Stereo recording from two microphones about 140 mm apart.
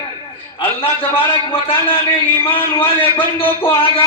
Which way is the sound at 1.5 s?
40° left (ahead or behind).